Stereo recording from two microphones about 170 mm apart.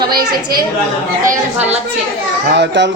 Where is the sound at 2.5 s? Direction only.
90° right.